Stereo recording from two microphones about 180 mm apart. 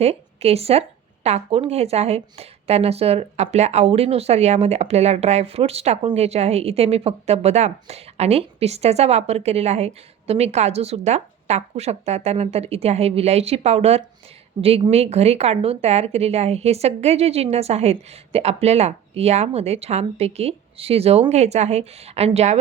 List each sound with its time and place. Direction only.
0.0 s speech: 35° right (ahead or behind)